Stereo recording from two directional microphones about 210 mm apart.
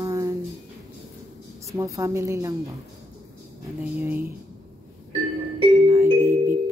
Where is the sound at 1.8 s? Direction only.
15° right (ahead or behind).